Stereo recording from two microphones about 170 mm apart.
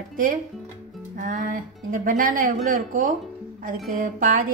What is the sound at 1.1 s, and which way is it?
A woman's voice, 55° right (ahead or behind).